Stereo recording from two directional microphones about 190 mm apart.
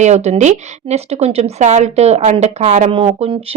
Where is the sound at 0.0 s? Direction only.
35° right (ahead or behind).